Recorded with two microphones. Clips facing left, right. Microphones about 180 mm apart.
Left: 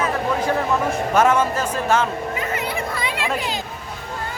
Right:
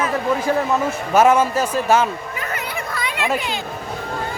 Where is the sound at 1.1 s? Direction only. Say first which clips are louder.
Right 4 dB; 10° right (ahead or behind).